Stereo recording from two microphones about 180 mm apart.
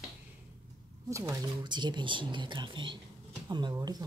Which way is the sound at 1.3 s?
25° right (ahead or behind).